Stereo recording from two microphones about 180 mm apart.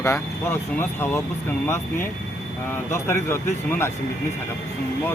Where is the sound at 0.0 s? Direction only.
15° left (ahead or behind).